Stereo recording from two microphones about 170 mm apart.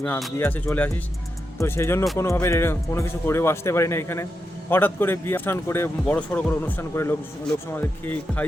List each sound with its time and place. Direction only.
0.3 s a man's voice: 10° left (ahead or behind)